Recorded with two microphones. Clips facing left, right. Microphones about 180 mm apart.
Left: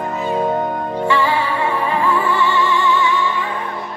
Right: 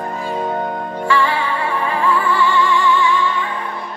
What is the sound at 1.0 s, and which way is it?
Music, 20° left (ahead or behind).